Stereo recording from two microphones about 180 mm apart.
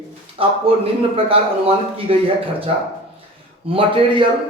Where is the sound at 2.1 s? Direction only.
30° right (ahead or behind).